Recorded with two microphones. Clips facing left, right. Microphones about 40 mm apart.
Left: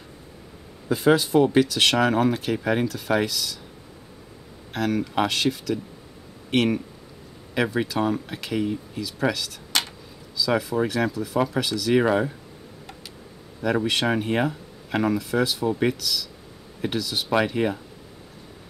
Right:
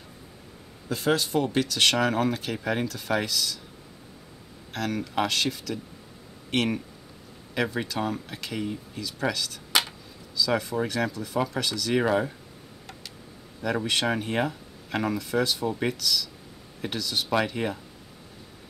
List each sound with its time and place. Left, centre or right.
0.8 s speech: centre
4.7 s speech: centre
13.6 s speech: centre